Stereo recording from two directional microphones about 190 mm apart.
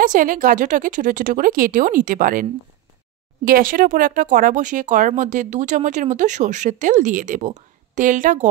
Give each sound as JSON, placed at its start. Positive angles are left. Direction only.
{"t": 0.0, "sound": "speech", "side_deg": -45}
{"t": 3.4, "sound": "speech", "side_deg": -50}